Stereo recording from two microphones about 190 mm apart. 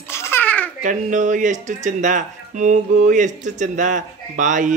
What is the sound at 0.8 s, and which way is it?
Speech, 40° right (ahead or behind).